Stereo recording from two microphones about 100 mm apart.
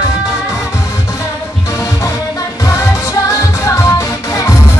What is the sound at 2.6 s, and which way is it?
Music, 30° left (ahead or behind).